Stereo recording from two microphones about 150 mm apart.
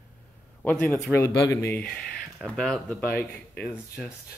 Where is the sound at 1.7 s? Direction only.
5° left (ahead or behind).